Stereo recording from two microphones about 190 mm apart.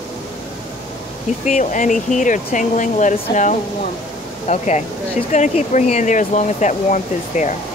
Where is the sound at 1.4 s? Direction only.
40° left (ahead or behind).